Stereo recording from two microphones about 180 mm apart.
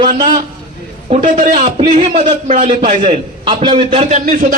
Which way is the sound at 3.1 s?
25° right (ahead or behind).